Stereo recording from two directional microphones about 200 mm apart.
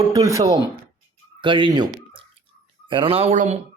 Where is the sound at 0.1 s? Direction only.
15° right (ahead or behind).